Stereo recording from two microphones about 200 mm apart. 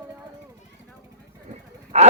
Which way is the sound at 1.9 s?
35° right (ahead or behind).